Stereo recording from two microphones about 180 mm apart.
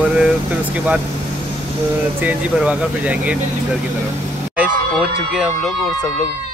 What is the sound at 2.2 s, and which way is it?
Speech, 5° right (ahead or behind).